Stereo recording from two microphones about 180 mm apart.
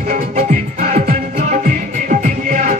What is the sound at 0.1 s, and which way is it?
Music, 40° right (ahead or behind).